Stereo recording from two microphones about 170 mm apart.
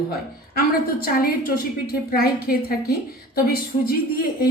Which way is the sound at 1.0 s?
60° left (ahead or behind).